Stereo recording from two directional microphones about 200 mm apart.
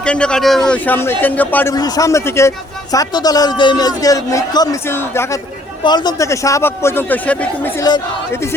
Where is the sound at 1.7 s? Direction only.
20° left (ahead or behind).